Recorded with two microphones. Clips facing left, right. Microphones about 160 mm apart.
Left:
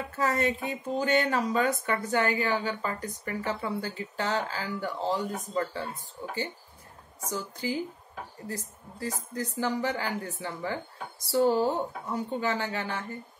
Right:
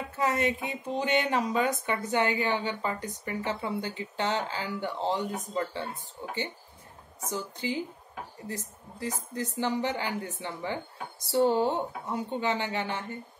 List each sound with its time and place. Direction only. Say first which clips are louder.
0.2 s a woman's voice: even; 20° right (ahead or behind)
7.6 s a woman's voice: left 2 dB; 20° right (ahead or behind)